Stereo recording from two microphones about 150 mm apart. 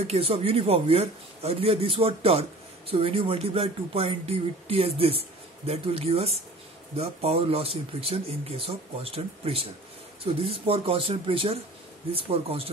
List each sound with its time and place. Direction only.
0.0 s speech: 40° right (ahead or behind)